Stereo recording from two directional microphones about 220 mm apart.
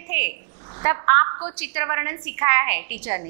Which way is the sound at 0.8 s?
15° right (ahead or behind).